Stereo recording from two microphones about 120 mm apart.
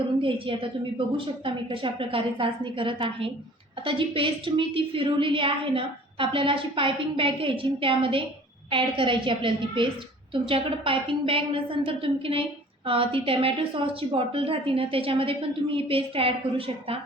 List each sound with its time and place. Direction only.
0.2 s a woman's voice: 45° right (ahead or behind)